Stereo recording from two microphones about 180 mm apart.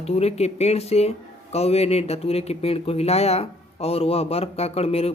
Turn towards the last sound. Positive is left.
turn(degrees=35)  # may be behind; listen again after turning